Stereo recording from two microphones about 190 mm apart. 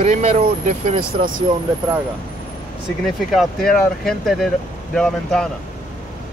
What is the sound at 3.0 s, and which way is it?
Speech, centre (ahead or behind).